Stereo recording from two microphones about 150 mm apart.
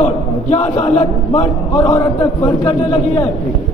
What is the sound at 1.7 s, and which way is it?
Speech, 25° left (ahead or behind).